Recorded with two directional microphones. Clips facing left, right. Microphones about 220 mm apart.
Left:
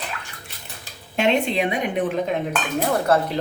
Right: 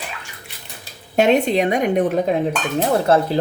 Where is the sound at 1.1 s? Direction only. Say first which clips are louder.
Right 5 dB; 40° right (ahead or behind).